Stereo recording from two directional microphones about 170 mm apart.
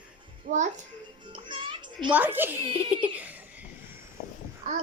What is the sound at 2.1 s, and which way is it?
Speech, 10° right (ahead or behind).